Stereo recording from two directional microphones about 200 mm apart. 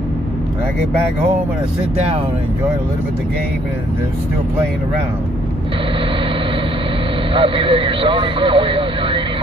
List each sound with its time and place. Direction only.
7.3 s speech: 25° right (ahead or behind)